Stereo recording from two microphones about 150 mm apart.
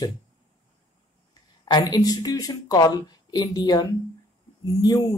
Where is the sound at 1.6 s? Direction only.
25° left (ahead or behind).